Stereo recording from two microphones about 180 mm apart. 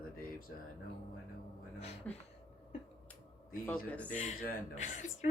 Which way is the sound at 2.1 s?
5° left (ahead or behind).